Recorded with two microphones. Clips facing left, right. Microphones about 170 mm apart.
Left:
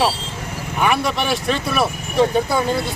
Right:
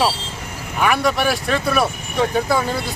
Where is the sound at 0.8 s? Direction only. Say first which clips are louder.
Right 2 dB; centre (ahead or behind).